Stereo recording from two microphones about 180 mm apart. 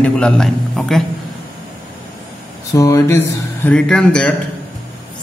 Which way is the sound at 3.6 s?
5° left (ahead or behind).